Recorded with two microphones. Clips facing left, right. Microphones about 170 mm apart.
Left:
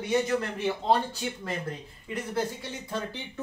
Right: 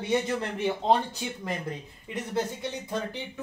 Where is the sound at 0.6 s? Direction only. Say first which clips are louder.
Right 3 dB; 15° right (ahead or behind).